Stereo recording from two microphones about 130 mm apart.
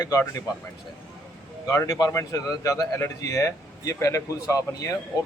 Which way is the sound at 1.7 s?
25° left (ahead or behind).